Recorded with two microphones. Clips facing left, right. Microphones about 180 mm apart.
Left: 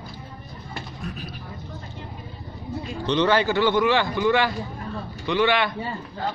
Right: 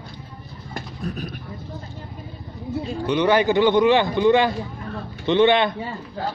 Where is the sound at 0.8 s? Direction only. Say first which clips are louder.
Right 5 dB; 45° right (ahead or behind).